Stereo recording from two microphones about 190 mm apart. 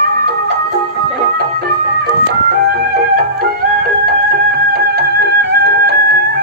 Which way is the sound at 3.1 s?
50° right (ahead or behind).